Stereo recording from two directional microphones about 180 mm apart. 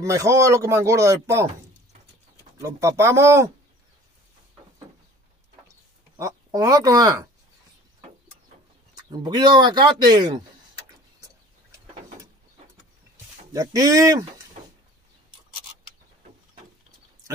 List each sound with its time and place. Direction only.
0.0 s speech: 15° right (ahead or behind)
2.6 s speech: 15° right (ahead or behind)
6.1 s speech: 20° right (ahead or behind)
8.9 s speech: 25° right (ahead or behind)
13.5 s speech: 20° right (ahead or behind)